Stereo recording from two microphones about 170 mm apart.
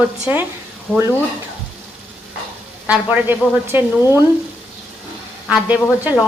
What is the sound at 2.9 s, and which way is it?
Speech, 10° right (ahead or behind).